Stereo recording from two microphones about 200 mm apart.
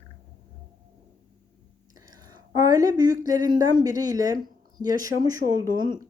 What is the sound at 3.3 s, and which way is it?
Speech, 20° right (ahead or behind).